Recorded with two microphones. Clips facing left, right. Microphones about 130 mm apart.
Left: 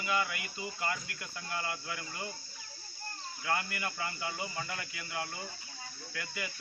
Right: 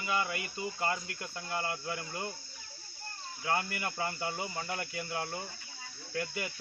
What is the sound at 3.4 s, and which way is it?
Speech, 30° right (ahead or behind).